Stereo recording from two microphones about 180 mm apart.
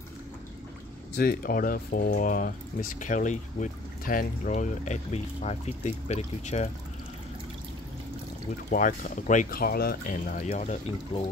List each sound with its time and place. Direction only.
1.1 s speech: 55° left (ahead or behind); by 6.7 s 40° left (ahead or behind)
8.6 s speech: 50° left (ahead or behind)